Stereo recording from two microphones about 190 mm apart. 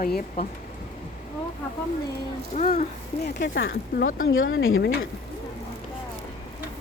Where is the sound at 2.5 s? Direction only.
40° left (ahead or behind).